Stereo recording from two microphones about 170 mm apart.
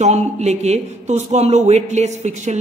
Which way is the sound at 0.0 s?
40° right (ahead or behind).